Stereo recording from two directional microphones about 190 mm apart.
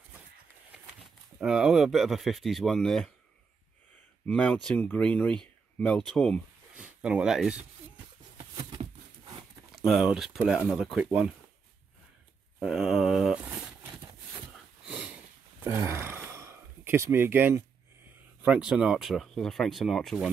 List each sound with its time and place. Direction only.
1.4 s speech: centre (ahead or behind)
4.3 s speech: 5° left (ahead or behind)
8.4 s a sound: 20° right (ahead or behind)
9.7 s speech: centre (ahead or behind)
12.5 s mantra: centre (ahead or behind)
14.9 s sniff: 5° right (ahead or behind)
15.6 s gasp: 10° right (ahead or behind)
18.4 s speech: 5° right (ahead or behind)